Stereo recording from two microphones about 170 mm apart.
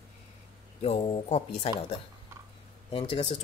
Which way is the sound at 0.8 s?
35° left (ahead or behind).